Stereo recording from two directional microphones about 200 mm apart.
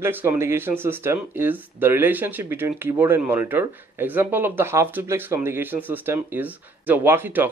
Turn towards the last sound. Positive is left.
turn(degrees=-10)  # may be behind; listen again after turning